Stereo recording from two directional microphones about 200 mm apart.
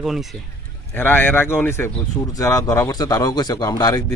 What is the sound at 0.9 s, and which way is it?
Speech, 10° left (ahead or behind).